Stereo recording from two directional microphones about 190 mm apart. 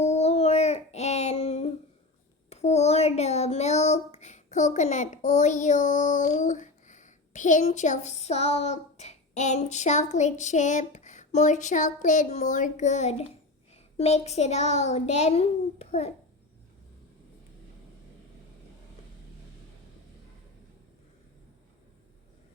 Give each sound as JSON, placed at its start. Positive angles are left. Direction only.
{"t": 0.0, "sound": "a sound", "side_deg": 35}
{"t": 2.5, "sound": "child singing", "side_deg": 35}
{"t": 13.9, "sound": "a child's voice", "side_deg": 35}